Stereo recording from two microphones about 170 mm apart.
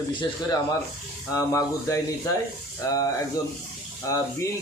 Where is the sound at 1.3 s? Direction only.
20° left (ahead or behind).